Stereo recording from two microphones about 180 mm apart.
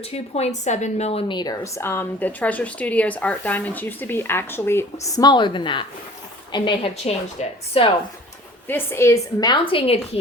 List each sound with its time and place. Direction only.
0.1 s a woman's voice: 35° left (ahead or behind)
8.6 s a woman's voice: 15° left (ahead or behind); by 10.0 s 30° left (ahead or behind)